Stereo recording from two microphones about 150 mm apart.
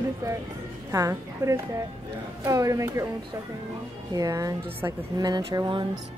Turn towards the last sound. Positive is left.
turn(degrees=-30)  # may be behind; listen again after turning